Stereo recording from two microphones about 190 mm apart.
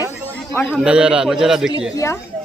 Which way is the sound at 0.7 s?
5° right (ahead or behind).